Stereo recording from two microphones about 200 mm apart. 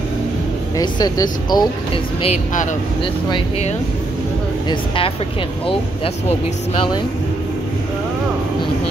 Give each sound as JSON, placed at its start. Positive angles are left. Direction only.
{"t": 0.7, "sound": "speech", "side_deg": 20}
{"t": 2.2, "sound": "speech", "side_deg": 35}